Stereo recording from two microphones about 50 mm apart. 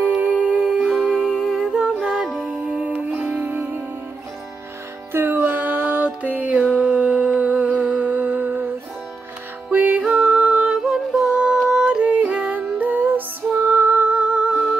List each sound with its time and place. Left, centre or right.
0.1 s music: right
1.4 s humming: centre
1.8 s music: centre
2.6 s music: right
5.1 s music: right
10.0 s music: centre
12.0 s music: right